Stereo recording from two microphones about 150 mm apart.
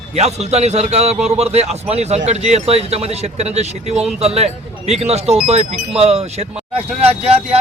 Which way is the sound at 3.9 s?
5° right (ahead or behind).